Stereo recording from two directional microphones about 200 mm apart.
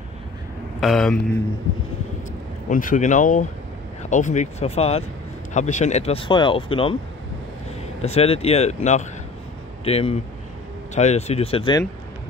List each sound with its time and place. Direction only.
0.7 s speech: centre (ahead or behind)
2.7 s speech: 40° left (ahead or behind)
8.0 s speech: 30° left (ahead or behind)